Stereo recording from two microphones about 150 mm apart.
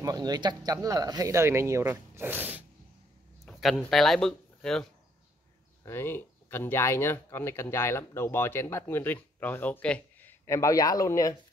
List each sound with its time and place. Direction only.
0.0 s speech: 25° right (ahead or behind)
3.4 s speech: centre (ahead or behind)
5.9 s speech: 15° left (ahead or behind)
10.4 s speech: 20° left (ahead or behind)